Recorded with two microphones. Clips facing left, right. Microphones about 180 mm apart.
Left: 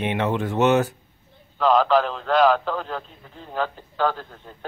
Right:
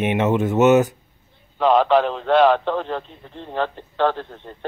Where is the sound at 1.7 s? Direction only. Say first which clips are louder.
Right 2 dB; centre (ahead or behind).